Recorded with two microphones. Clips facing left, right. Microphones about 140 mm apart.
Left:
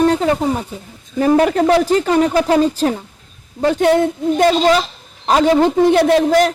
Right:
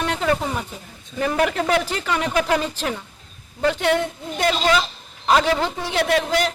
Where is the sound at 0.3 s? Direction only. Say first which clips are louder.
Left 5 dB; 35° left (ahead or behind).